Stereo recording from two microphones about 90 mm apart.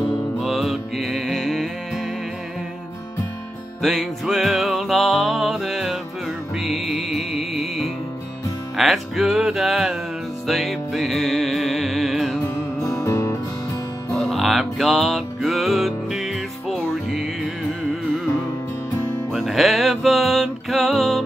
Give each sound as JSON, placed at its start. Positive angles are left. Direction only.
{"t": 0.4, "sound": "music", "side_deg": -5}
{"t": 3.8, "sound": "music", "side_deg": 0}
{"t": 12.4, "sound": "music", "side_deg": 35}
{"t": 14.1, "sound": "music", "side_deg": 0}
{"t": 19.3, "sound": "music", "side_deg": 0}